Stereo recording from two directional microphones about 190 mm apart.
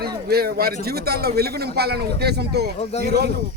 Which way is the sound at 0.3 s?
55° right (ahead or behind).